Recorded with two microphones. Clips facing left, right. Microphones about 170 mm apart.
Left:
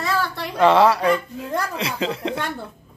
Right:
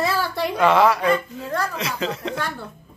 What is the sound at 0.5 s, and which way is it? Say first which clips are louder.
Speech: left 2 dB; 35° left (ahead or behind).